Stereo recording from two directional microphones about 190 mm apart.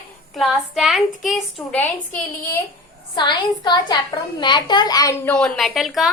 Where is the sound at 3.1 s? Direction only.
25° left (ahead or behind).